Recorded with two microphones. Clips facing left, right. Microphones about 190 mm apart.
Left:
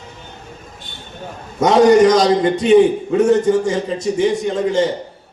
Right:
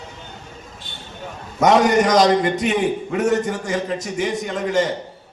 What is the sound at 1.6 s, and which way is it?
A man's voice, 30° left (ahead or behind).